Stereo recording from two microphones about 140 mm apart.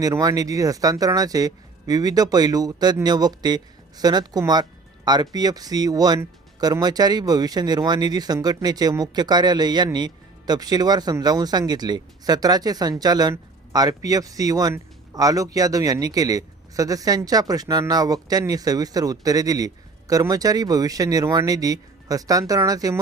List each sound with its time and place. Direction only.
0.0 s speech: 25° right (ahead or behind)